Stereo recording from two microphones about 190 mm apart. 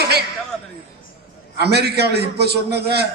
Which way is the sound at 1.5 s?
60° right (ahead or behind).